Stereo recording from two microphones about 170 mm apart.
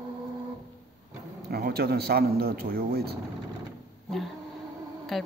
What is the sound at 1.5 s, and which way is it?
A man's voice, 65° right (ahead or behind).